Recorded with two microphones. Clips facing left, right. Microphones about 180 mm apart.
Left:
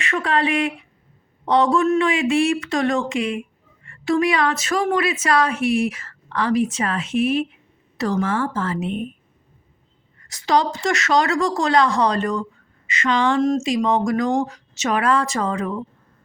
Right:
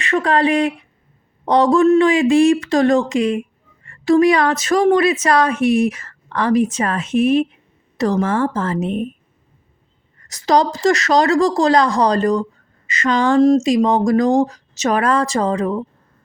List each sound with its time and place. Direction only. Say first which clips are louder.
0.0 s a woman's voice: right 5 dB; 35° right (ahead or behind)
10.2 s a woman's voice: right 4 dB; 40° right (ahead or behind)